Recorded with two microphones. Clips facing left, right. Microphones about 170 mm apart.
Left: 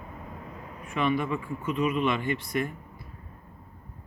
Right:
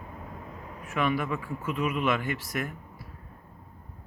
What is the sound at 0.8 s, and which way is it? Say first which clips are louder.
Speech: left 1 dB; 5° right (ahead or behind).